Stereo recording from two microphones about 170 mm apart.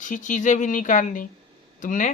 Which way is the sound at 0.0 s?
50° left (ahead or behind).